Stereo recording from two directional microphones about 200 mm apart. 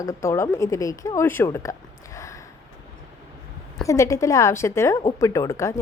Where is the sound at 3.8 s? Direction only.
15° left (ahead or behind).